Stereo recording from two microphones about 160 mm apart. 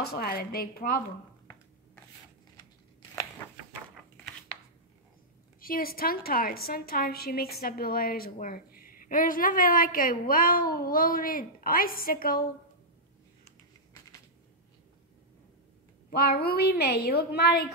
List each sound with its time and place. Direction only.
0.1 s a woman's voice: 70° left (ahead or behind)
5.6 s a woman's voice: 65° left (ahead or behind)
16.1 s a woman's voice: 75° left (ahead or behind); by 17.7 s 90° left